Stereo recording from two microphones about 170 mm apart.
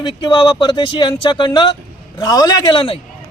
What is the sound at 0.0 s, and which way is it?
Speech, 30° left (ahead or behind).